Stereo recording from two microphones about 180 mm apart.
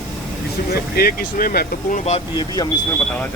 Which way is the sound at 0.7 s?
55° left (ahead or behind).